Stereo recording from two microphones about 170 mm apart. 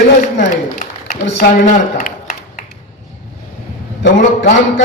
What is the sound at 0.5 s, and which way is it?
Speech, 50° left (ahead or behind).